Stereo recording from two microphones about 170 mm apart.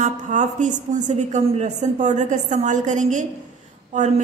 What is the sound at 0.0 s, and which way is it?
A woman's voice, 45° right (ahead or behind).